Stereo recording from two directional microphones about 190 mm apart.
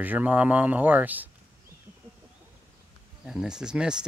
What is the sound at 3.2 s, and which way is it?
Speech, 5° right (ahead or behind).